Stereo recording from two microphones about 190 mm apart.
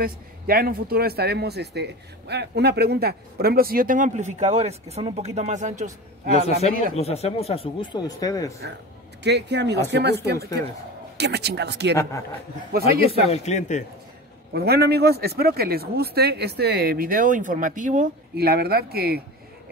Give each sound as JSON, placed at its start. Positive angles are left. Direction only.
{"t": 0.0, "sound": "speech", "side_deg": -50}
{"t": 7.0, "sound": "speech", "side_deg": 35}
{"t": 9.2, "sound": "speech", "side_deg": -65}
{"t": 13.3, "sound": "speech", "side_deg": 40}
{"t": 14.5, "sound": "speech", "side_deg": -55}